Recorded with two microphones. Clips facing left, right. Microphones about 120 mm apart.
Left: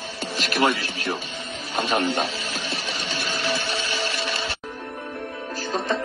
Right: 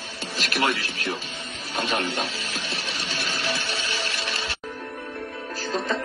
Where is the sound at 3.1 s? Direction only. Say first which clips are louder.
Left 3 dB; 45° left (ahead or behind).